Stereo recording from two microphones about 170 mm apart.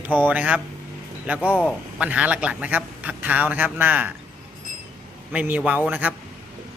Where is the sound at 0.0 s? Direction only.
10° right (ahead or behind).